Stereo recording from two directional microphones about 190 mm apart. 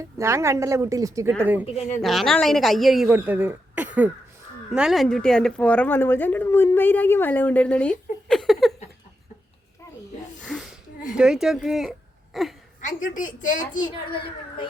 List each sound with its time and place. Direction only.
0.0 s a woman's voice: 15° right (ahead or behind)
1.6 s speech: 35° left (ahead or behind)
2.0 s speech: centre (ahead or behind)
10.4 s a sound: centre (ahead or behind)
11.1 s a woman's voice: 5° right (ahead or behind)
12.8 s a woman's voice: 40° left (ahead or behind)